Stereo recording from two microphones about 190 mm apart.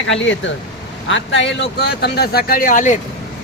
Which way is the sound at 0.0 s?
80° left.